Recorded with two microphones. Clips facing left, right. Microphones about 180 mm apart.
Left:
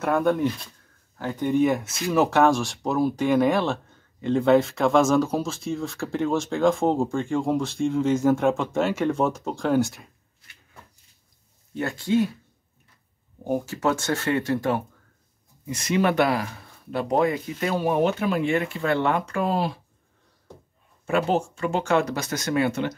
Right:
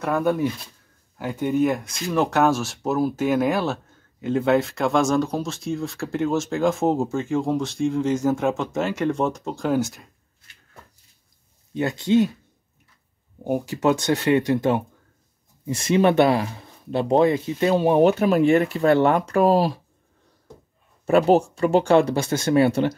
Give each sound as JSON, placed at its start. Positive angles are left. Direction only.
{"t": 0.0, "sound": "speech", "side_deg": -5}
{"t": 11.7, "sound": "speech", "side_deg": -20}
{"t": 13.4, "sound": "speech", "side_deg": -15}
{"t": 21.0, "sound": "speech", "side_deg": -40}